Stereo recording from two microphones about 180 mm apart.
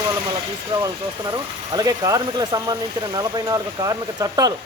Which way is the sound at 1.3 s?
20° right (ahead or behind).